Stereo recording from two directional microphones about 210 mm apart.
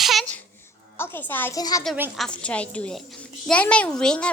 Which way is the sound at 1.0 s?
10° left (ahead or behind).